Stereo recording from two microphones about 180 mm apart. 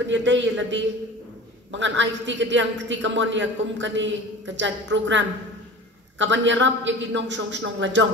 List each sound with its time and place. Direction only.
0.0 s a man's voice: 90° right